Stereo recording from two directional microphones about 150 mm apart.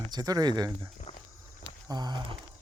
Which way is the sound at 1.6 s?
30° right (ahead or behind).